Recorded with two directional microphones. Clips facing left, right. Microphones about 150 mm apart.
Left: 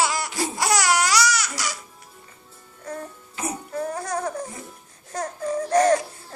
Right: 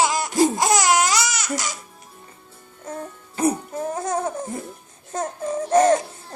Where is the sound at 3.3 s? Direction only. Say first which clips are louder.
Right 10 dB; 35° right (ahead or behind).